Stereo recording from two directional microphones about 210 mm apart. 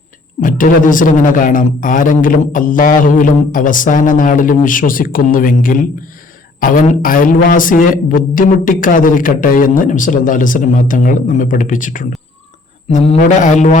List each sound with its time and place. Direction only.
0.4 s a man's voice: 40° left (ahead or behind)